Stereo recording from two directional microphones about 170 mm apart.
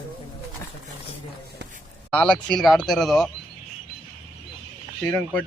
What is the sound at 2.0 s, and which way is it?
Speech, 5° left (ahead or behind).